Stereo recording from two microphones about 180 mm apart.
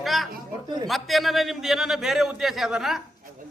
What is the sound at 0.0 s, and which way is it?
Chatter, centre (ahead or behind).